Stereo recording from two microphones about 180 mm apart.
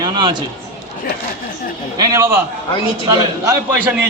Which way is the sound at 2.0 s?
15° right (ahead or behind).